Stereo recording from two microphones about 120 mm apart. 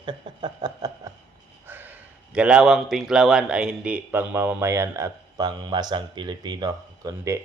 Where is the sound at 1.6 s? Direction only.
15° right (ahead or behind); by 7.3 s 30° right (ahead or behind).